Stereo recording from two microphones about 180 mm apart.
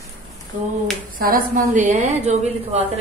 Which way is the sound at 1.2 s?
50° right (ahead or behind).